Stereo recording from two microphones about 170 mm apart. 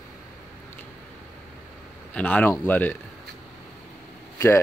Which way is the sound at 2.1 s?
10° left (ahead or behind).